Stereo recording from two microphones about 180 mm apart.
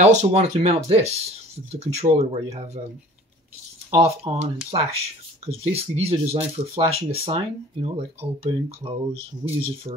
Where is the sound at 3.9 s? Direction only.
35° right (ahead or behind).